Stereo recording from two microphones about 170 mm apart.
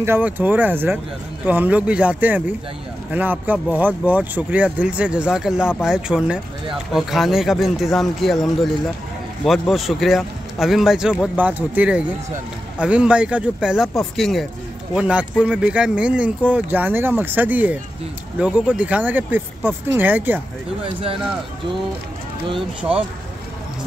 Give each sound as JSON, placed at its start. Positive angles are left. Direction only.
{"t": 0.0, "sound": "speech", "side_deg": -10}
{"t": 20.8, "sound": "speech", "side_deg": -30}